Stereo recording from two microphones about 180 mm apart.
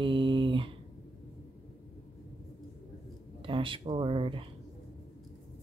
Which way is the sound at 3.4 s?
25° right (ahead or behind).